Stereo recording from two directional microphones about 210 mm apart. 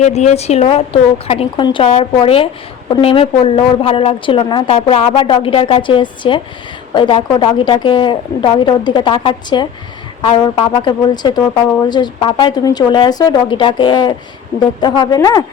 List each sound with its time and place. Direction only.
0.0 s speech: 35° left (ahead or behind); by 15.4 s 15° left (ahead or behind)